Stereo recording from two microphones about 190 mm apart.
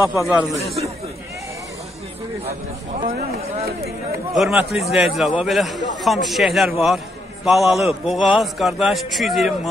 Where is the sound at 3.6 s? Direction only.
55° right (ahead or behind).